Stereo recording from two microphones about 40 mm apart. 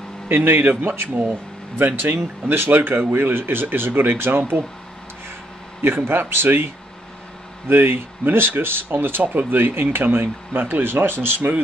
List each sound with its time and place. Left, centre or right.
0.3 s speech: right
1.0 s speech: right
2.4 s speech: right
5.8 s speech: right